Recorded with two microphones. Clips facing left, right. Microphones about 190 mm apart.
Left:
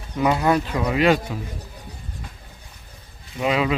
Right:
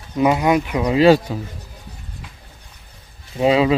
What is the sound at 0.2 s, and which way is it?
Speech, 15° right (ahead or behind).